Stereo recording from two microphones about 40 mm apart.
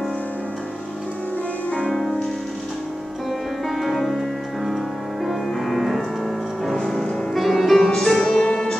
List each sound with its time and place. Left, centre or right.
1.9 s music: centre
3.6 s music: centre
8.4 s music: centre